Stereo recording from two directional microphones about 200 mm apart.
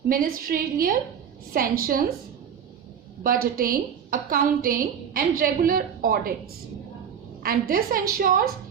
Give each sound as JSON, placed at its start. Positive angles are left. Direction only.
{"t": 0.1, "sound": "a woman's voice", "side_deg": -45}
{"t": 3.2, "sound": "a woman's voice", "side_deg": -45}
{"t": 7.4, "sound": "a woman's voice", "side_deg": -45}